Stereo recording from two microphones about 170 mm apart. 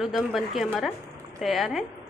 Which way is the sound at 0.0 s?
Centre (ahead or behind).